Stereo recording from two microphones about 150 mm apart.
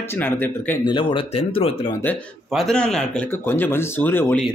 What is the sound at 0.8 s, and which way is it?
Speech, 35° left (ahead or behind).